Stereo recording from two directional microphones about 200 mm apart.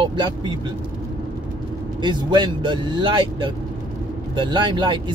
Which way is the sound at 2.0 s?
25° right (ahead or behind).